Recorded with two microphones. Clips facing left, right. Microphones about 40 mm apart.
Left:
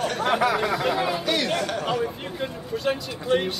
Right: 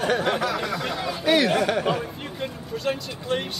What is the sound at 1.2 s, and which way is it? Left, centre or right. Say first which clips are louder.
Speech: right 4 dB; centre.